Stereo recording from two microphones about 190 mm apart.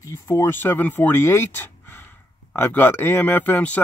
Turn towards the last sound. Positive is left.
turn(degrees=10)  # may be behind; listen again after turning